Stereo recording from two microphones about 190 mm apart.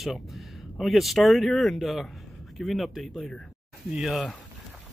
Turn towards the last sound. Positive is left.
turn(degrees=0)  # may be behind; listen again after turning